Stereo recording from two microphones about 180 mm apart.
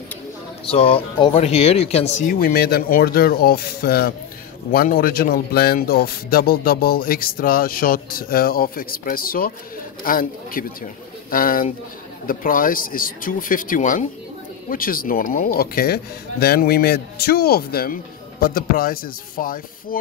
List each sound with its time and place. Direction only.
0.7 s speech: 30° left (ahead or behind); by 20.0 s 50° left (ahead or behind)